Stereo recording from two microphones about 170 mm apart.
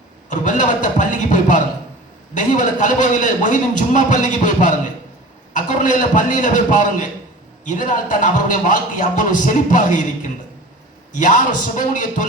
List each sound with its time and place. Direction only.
0.3 s a man's voice: 45° left (ahead or behind)